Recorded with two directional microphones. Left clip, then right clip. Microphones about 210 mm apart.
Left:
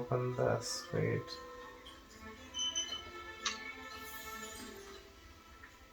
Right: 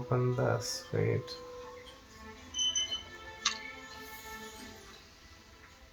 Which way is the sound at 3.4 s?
50° right (ahead or behind).